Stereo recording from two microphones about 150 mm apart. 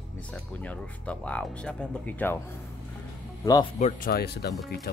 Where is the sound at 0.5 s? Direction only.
10° left (ahead or behind).